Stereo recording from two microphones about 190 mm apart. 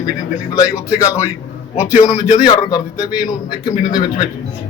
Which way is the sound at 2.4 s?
20° left (ahead or behind).